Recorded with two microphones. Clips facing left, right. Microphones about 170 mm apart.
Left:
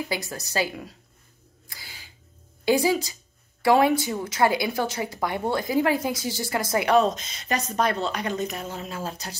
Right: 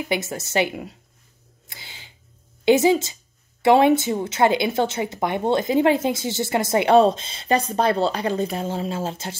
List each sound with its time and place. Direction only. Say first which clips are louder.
0.1 s speech: right 5 dB; 25° right (ahead or behind)
1.7 s a sound: right 2 dB; 25° right (ahead or behind)
2.6 s speech: right 5 dB; 25° right (ahead or behind)